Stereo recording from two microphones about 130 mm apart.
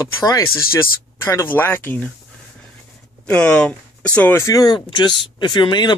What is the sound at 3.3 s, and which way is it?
Speech, 10° left (ahead or behind).